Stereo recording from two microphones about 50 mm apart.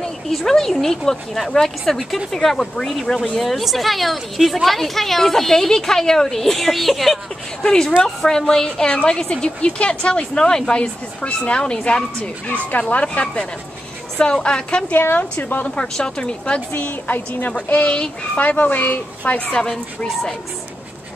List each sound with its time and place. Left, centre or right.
0.3 s speech: centre
7.6 s a woman's voice: centre
14.9 s a woman's voice: left
15.6 s a woman's voice: left
16.8 s a woman's voice: left
19.3 s speech: centre